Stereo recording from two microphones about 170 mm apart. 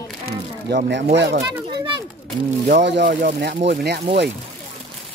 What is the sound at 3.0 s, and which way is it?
Speech, 55° right (ahead or behind).